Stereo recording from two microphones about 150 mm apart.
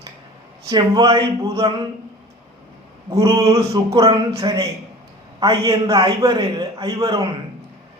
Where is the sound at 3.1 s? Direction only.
25° right (ahead or behind).